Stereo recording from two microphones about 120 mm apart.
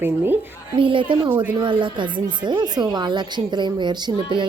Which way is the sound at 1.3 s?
15° right (ahead or behind).